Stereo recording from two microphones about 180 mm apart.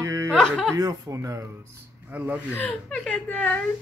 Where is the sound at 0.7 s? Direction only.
15° right (ahead or behind).